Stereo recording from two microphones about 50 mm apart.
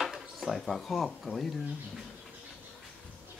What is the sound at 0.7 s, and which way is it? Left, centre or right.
Speech, centre.